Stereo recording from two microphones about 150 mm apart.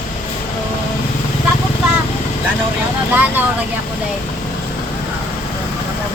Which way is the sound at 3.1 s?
10° right (ahead or behind).